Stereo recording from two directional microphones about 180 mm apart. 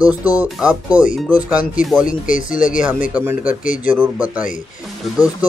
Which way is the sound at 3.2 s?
10° right (ahead or behind).